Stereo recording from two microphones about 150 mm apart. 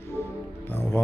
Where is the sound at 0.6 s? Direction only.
15° left (ahead or behind).